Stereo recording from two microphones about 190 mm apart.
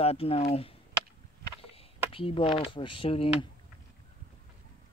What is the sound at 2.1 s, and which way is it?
Speech, 30° left (ahead or behind).